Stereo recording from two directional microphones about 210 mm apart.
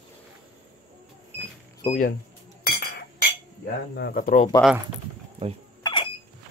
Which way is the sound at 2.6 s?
50° left (ahead or behind).